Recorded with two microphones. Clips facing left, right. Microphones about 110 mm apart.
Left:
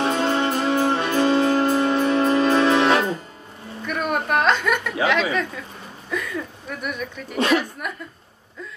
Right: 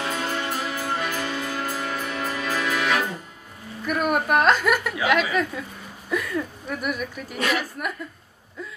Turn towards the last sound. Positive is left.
turn(degrees=-5)  # may be behind; listen again after turning